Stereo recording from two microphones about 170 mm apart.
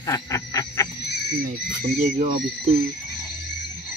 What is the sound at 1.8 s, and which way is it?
Speech, 50° right (ahead or behind).